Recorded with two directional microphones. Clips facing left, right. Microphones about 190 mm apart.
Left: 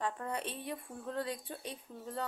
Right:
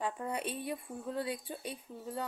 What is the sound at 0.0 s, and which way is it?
A woman's voice, 10° right (ahead or behind).